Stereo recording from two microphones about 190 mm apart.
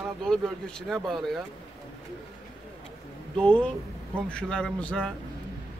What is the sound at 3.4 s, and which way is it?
Speech, 5° left (ahead or behind).